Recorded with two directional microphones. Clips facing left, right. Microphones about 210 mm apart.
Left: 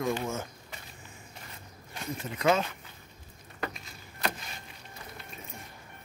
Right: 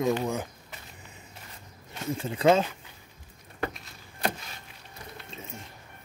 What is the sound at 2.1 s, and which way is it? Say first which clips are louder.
Speech: right 5 dB; 30° right (ahead or behind).